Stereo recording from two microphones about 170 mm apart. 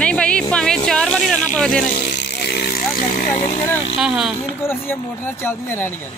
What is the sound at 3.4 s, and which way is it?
Speech, 40° left (ahead or behind).